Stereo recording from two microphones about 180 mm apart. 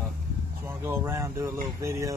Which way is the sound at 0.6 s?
15° right (ahead or behind).